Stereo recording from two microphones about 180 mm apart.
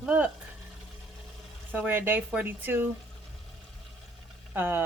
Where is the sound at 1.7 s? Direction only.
10° right (ahead or behind).